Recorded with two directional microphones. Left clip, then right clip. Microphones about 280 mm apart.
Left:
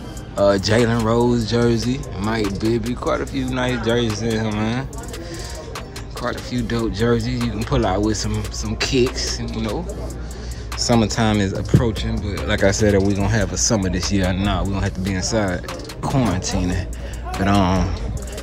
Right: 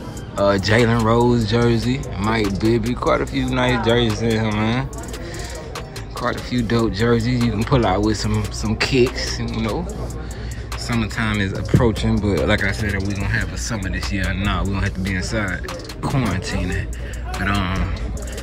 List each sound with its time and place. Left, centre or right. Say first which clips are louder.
0.4 s speech: even; centre
2.4 s speech: right 2 dB; centre
2.9 s speech: right 3 dB; centre
6.2 s speech: right 2 dB; centre
10.8 s speech: left 6 dB; left
11.7 s speech: right 6 dB; centre
13.2 s speech: left 4 dB; left